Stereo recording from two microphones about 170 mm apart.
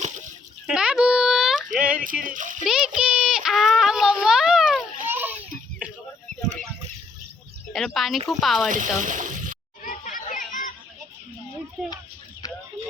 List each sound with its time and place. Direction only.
0.7 s a sound: 5° right (ahead or behind)
2.2 s a child's voice: 50° right (ahead or behind)
2.6 s child singing: 5° right (ahead or behind)
7.9 s speech: centre (ahead or behind)
9.0 s speech: 50° right (ahead or behind)
9.8 s chatter: 50° left (ahead or behind)